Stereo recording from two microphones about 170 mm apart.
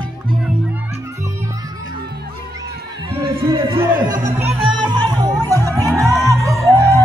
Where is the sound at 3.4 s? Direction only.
30° right (ahead or behind).